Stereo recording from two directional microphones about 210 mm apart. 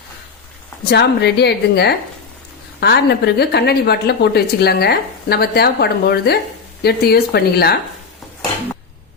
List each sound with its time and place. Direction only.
0.9 s speech: 50° left (ahead or behind)